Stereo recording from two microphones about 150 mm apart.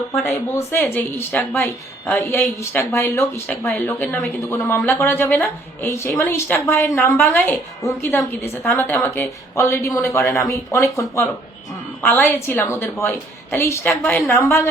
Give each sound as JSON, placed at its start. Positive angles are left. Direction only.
{"t": 0.2, "sound": "a woman's voice", "side_deg": 15}
{"t": 9.0, "sound": "a woman's voice", "side_deg": 15}